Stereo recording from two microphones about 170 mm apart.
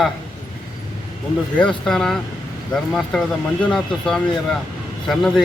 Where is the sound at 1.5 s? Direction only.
5° left (ahead or behind).